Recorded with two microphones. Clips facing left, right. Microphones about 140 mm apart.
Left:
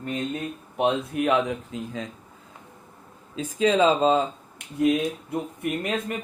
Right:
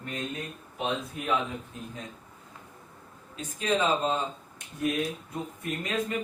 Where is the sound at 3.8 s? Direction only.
90° left.